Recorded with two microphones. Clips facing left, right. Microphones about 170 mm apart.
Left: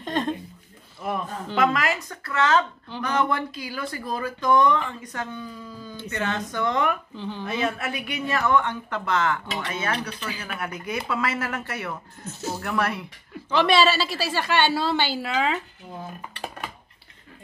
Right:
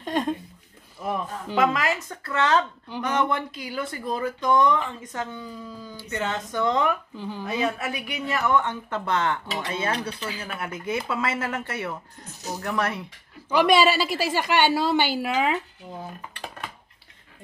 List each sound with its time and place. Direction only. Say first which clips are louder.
0.0 s a sound: right 1 dB; 10° right (ahead or behind)
1.5 s a woman's voice: even; 15° right (ahead or behind)
7.2 s a woman's voice: even; 5° right (ahead or behind)